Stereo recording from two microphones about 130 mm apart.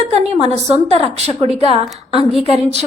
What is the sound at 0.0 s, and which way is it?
A woman's voice, 55° right (ahead or behind).